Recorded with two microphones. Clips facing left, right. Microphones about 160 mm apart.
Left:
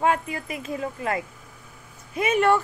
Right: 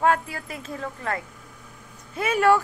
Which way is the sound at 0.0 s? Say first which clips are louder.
Right 1 dB; 5° left (ahead or behind).